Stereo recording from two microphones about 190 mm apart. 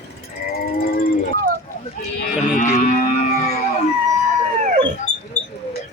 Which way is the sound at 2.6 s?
40° left (ahead or behind).